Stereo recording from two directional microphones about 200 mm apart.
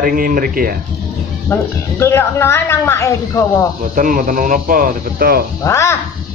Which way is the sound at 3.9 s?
40° right (ahead or behind).